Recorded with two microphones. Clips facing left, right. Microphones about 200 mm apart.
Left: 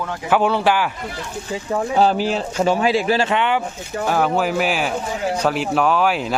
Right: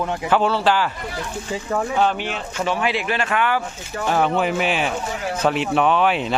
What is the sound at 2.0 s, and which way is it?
Speech, 35° left (ahead or behind).